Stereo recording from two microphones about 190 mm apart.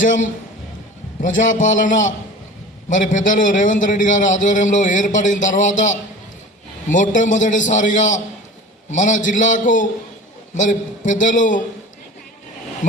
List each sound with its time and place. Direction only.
0.0 s a man's voice: 40° left (ahead or behind)
1.4 s a man's voice: 40° left (ahead or behind)
6.8 s a man's voice: 40° left (ahead or behind)